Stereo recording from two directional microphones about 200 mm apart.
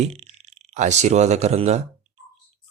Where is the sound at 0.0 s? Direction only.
30° right (ahead or behind).